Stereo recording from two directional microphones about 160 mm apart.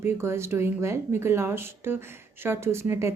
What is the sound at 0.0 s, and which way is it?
A woman's voice, 15° right (ahead or behind).